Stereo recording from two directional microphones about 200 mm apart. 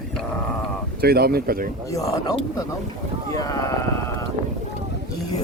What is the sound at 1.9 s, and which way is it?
Speech, 15° left (ahead or behind).